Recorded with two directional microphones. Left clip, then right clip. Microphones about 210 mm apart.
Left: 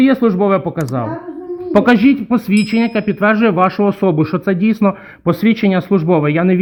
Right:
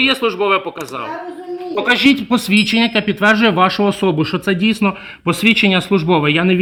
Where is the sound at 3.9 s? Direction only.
10° left (ahead or behind).